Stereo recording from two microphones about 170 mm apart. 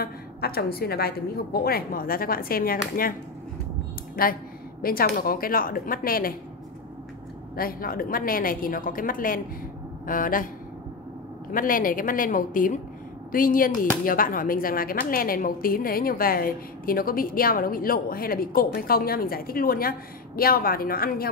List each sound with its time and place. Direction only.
0.0 s a woman's voice: 65° left (ahead or behind)
4.2 s a woman's voice: 60° left (ahead or behind)
7.5 s a woman's voice: 60° left (ahead or behind)
11.5 s a woman's voice: 55° left (ahead or behind)